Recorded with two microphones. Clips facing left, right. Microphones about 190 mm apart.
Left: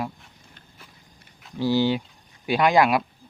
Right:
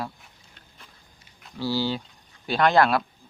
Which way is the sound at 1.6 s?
15° left (ahead or behind).